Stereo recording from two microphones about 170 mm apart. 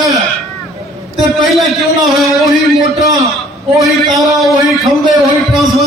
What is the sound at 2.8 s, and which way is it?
Speech, 20° right (ahead or behind).